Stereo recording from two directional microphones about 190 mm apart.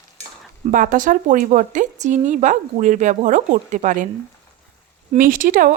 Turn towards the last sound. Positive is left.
turn(degrees=-45)  # may be behind; listen again after turning